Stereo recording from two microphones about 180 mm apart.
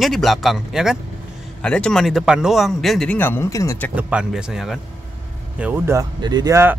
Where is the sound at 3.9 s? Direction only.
5° right (ahead or behind).